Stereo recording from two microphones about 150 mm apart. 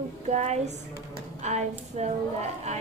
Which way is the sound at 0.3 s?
50° right (ahead or behind).